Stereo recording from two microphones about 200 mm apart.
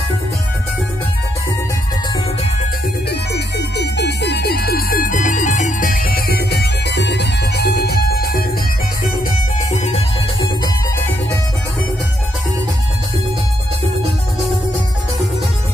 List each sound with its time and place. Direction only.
3.1 s music: 55° left (ahead or behind)
9.7 s music: 35° left (ahead or behind)
10.4 s music: 20° left (ahead or behind)